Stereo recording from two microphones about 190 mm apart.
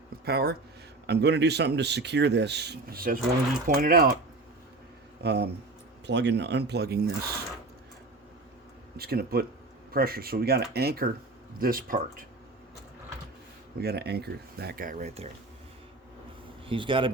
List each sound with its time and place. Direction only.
0.3 s speech: 55° right (ahead or behind)
5.2 s speech: 60° right (ahead or behind)
9.0 s speech: 55° right (ahead or behind)
13.7 s speech: 55° right (ahead or behind); by 15.3 s 35° right (ahead or behind)
16.6 s speech: 25° right (ahead or behind)